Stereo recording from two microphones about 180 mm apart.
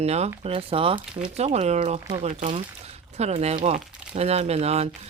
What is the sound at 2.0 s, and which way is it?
Speech, 25° right (ahead or behind).